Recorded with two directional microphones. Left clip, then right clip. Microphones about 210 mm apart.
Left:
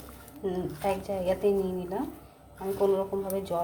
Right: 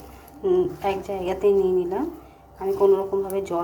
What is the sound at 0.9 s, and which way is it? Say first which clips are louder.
A woman's voice: right 3 dB; 10° right (ahead or behind).